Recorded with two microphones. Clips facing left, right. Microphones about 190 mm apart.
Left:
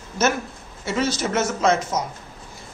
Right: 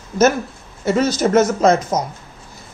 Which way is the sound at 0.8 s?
40° right (ahead or behind).